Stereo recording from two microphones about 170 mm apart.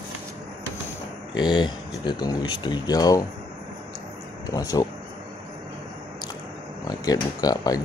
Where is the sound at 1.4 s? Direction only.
25° left (ahead or behind).